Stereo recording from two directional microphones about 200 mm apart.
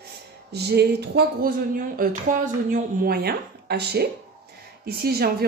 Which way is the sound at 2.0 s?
45° right (ahead or behind).